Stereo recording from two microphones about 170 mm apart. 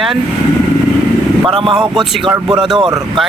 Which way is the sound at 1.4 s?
30° right (ahead or behind).